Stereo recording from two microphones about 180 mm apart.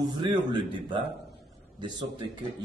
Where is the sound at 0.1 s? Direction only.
25° right (ahead or behind).